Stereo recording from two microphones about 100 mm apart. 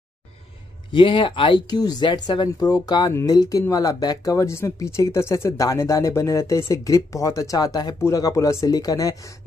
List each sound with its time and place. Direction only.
0.9 s speech: 60° left (ahead or behind)
1.7 s speech: 40° left (ahead or behind)